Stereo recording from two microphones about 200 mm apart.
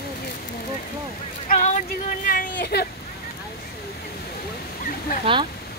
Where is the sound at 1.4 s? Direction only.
40° left (ahead or behind).